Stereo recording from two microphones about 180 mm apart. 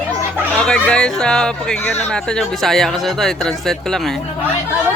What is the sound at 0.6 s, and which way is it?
Speech, 5° left (ahead or behind).